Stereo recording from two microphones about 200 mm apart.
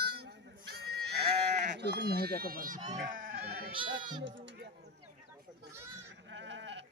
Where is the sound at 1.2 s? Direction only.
30° right (ahead or behind).